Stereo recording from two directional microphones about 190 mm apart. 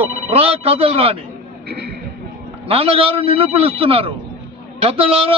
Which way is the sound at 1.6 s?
60° right (ahead or behind).